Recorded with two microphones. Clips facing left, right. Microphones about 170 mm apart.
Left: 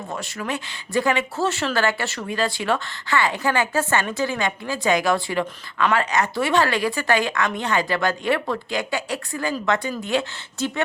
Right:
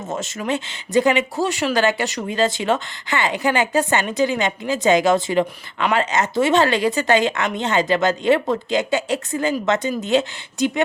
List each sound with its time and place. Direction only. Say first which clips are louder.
0.1 s speech: right 5 dB; 20° right (ahead or behind)